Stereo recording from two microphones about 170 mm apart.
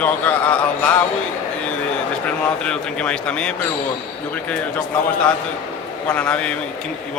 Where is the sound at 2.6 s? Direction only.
5° left (ahead or behind).